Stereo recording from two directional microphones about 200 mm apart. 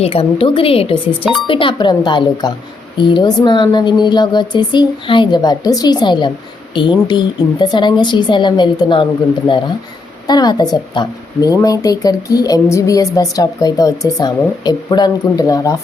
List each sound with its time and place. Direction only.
0.0 s speech: 30° left (ahead or behind)
10.2 s speech: 20° left (ahead or behind)